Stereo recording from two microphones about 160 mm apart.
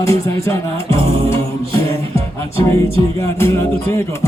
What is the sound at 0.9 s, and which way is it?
Music, 35° right (ahead or behind).